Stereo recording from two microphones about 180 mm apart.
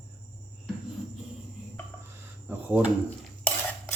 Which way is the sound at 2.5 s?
10° right (ahead or behind).